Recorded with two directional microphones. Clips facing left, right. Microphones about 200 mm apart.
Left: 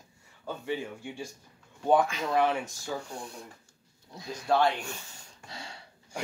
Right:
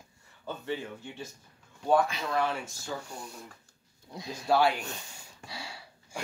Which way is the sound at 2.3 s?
20° left (ahead or behind).